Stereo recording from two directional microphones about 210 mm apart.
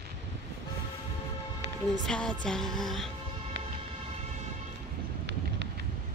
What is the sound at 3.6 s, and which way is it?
Music, 60° right (ahead or behind).